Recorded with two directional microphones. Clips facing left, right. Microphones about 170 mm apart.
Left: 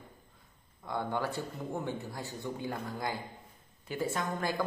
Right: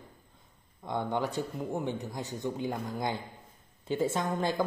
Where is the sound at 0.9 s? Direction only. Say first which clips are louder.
Right 2 dB; 20° right (ahead or behind).